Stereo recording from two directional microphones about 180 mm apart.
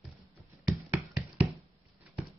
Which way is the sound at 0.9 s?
10° right (ahead or behind).